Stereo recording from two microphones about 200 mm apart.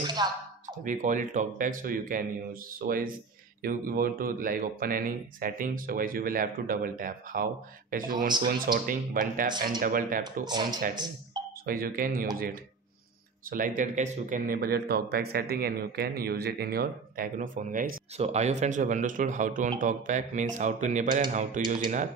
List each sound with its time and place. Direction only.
0.0 s a sound: 20° right (ahead or behind)
0.8 s speech: 40° right (ahead or behind)
9.5 s speech: 20° right (ahead or behind)
9.8 s speech: 45° right (ahead or behind)
10.4 s speech: 20° right (ahead or behind)
11.6 s speech: 45° right (ahead or behind)
13.5 s speech: 40° right (ahead or behind)